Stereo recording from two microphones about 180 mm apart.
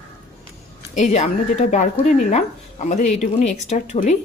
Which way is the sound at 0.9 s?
40° left (ahead or behind).